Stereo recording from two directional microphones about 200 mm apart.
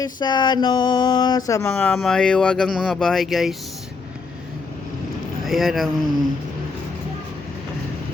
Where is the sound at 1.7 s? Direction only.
5° left (ahead or behind).